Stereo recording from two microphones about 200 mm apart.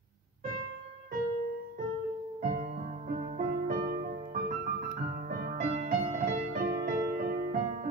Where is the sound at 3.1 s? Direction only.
40° right (ahead or behind).